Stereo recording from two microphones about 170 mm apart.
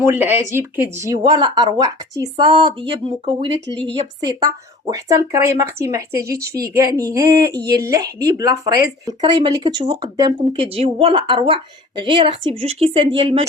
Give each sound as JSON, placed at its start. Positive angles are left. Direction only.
{"t": 0.0, "sound": "speech", "side_deg": -15}
{"t": 4.9, "sound": "a woman's voice", "side_deg": -20}